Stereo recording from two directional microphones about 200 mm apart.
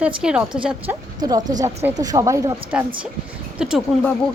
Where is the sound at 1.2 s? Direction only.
20° right (ahead or behind).